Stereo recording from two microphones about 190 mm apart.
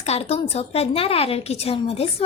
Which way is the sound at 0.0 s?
35° left (ahead or behind).